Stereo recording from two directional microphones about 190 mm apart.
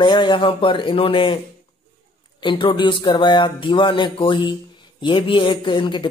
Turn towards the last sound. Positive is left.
turn(degrees=25)  # may be behind; listen again after turning